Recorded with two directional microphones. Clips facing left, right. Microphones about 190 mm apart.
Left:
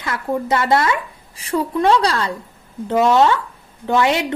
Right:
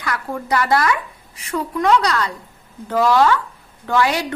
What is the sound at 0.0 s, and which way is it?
A woman's voice, 25° left (ahead or behind).